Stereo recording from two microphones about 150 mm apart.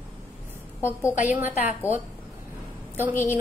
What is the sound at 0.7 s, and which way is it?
Speech, 20° left (ahead or behind).